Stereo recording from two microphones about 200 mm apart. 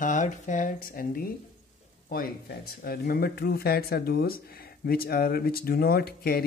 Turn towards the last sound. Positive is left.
turn(degrees=50)  # may be behind; listen again after turning